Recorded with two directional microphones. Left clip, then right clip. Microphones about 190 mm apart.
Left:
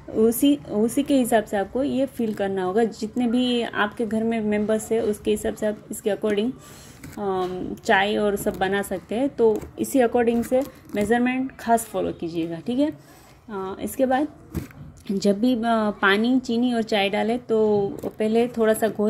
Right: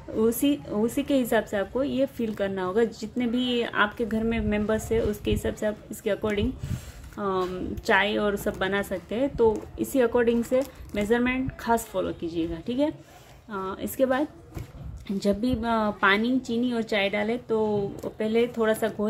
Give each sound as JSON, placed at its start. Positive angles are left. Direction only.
{"t": 0.2, "sound": "a woman's voice", "side_deg": 10}